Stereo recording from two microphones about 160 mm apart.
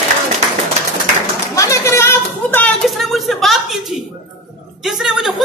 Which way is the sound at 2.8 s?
Centre (ahead or behind).